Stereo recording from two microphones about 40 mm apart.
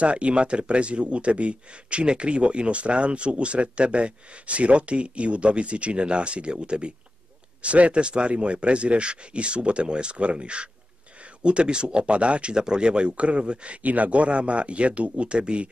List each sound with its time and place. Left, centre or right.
0.0 s speech: right
13.8 s speech: right